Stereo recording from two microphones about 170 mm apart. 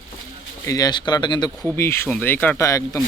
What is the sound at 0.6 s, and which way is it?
Speech, 20° left (ahead or behind).